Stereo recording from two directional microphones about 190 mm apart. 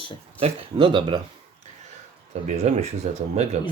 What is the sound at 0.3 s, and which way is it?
Speech, 30° right (ahead or behind).